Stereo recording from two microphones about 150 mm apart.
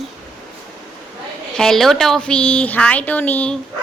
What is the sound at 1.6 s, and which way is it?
A woman's voice, 5° left (ahead or behind).